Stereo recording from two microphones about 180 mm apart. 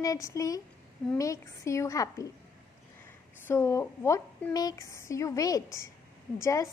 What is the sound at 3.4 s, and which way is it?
Speech, 15° left (ahead or behind).